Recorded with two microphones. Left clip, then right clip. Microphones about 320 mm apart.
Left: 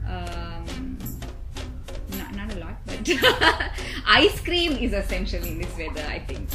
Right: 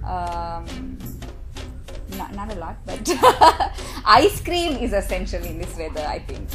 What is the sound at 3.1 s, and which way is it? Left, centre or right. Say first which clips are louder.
Speech: right 6 dB; centre.